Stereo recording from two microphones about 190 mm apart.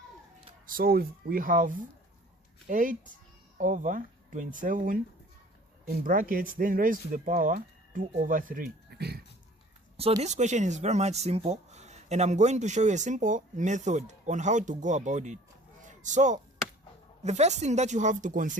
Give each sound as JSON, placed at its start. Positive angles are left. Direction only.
{"t": 0.7, "sound": "speech", "side_deg": -50}
{"t": 10.2, "sound": "speech", "side_deg": -40}